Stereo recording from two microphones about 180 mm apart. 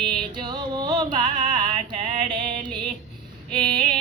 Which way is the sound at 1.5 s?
30° right (ahead or behind).